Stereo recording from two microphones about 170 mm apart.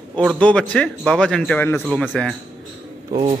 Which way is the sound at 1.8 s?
Centre (ahead or behind).